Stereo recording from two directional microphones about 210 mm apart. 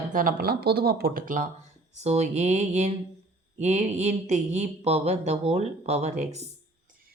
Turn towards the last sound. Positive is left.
turn(degrees=-30)  # may be behind; listen again after turning